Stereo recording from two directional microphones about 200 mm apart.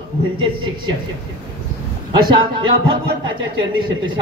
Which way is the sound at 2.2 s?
25° right (ahead or behind).